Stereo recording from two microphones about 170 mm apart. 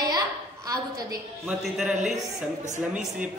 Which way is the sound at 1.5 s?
5° right (ahead or behind).